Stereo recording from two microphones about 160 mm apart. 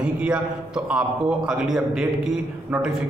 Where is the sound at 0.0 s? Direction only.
5° right (ahead or behind).